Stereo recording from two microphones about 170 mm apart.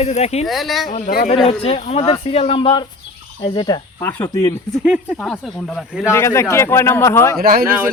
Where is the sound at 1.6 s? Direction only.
35° left (ahead or behind).